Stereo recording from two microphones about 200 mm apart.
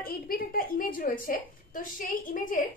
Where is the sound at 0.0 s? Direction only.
45° left (ahead or behind).